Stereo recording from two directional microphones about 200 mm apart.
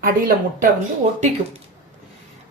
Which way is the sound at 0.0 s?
45° right (ahead or behind).